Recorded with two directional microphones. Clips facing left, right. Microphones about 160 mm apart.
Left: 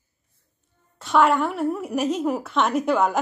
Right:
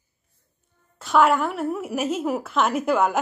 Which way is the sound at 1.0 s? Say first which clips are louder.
Even; centre (ahead or behind).